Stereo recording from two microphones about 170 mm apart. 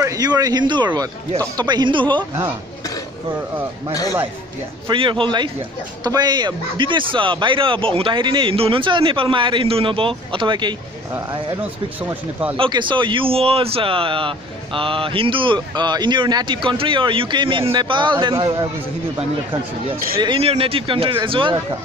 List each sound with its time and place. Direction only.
0.0 s speech: 20° right (ahead or behind)
4.8 s speech: 30° right (ahead or behind)
12.0 s speech: 10° right (ahead or behind)
12.5 s speech: 30° right (ahead or behind)
20.2 s speech: 30° right (ahead or behind)